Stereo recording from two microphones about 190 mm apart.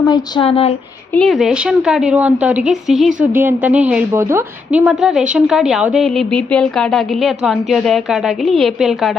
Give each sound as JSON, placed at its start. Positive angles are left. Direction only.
{"t": 0.1, "sound": "speech", "side_deg": 25}
{"t": 1.1, "sound": "a woman's voice", "side_deg": 0}